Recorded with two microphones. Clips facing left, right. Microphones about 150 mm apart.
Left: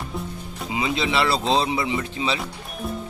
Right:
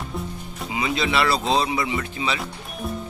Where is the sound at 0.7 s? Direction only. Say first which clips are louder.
Even; 25° left (ahead or behind).